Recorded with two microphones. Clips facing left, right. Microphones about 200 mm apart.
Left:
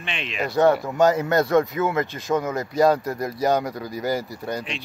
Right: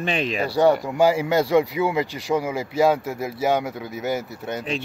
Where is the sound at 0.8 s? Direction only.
10° right (ahead or behind).